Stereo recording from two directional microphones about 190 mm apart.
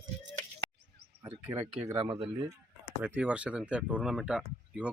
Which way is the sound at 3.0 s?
5° right (ahead or behind).